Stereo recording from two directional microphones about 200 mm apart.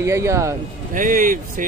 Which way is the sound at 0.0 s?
15° right (ahead or behind).